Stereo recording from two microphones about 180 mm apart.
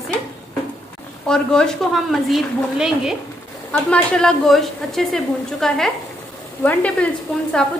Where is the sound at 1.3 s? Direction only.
5° left (ahead or behind).